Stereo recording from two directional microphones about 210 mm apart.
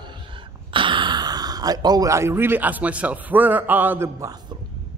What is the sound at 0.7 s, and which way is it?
Speech, 25° right (ahead or behind).